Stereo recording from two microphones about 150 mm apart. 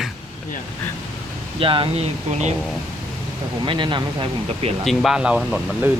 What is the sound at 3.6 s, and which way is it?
Speech, 30° right (ahead or behind).